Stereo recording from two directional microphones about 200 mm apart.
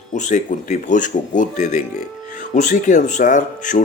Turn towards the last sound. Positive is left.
turn(degrees=40)  # may be behind; listen again after turning